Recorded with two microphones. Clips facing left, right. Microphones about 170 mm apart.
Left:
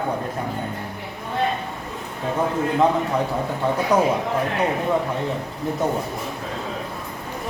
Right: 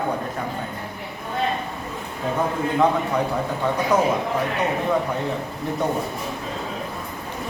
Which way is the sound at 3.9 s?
10° left (ahead or behind).